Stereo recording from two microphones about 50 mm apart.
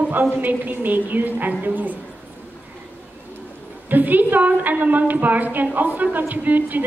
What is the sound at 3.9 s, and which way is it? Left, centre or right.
A woman's voice, right.